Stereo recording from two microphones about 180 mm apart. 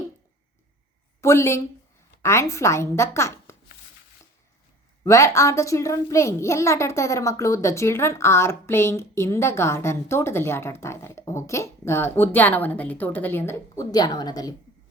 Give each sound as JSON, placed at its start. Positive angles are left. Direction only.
{"t": 1.2, "sound": "a child's voice", "side_deg": 15}
{"t": 5.0, "sound": "a child's voice", "side_deg": 15}